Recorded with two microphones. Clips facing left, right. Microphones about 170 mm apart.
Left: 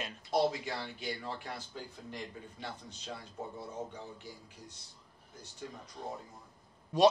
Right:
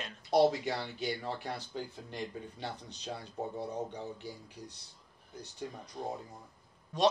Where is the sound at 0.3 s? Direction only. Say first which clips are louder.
Right 4 dB; 35° right (ahead or behind).